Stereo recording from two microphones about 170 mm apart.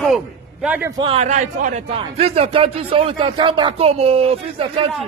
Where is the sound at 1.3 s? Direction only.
50° right (ahead or behind).